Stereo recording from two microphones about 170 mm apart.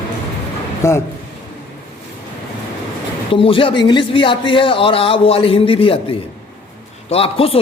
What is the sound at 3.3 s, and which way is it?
A man's voice, 30° left (ahead or behind).